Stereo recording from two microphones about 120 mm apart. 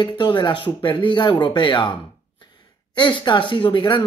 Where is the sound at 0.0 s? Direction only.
40° left (ahead or behind).